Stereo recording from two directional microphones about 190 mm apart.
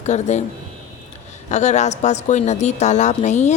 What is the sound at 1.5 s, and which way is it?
Speech, 40° left (ahead or behind).